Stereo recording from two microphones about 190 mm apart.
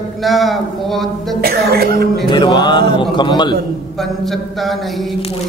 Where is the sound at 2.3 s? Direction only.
25° left (ahead or behind).